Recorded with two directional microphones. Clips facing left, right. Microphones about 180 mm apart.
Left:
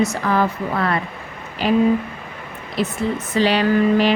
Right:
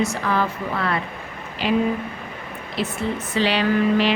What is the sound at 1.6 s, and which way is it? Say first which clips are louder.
Speech: left 3 dB; 40° left (ahead or behind).